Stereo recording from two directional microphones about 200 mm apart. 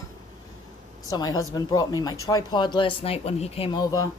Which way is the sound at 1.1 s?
20° left (ahead or behind).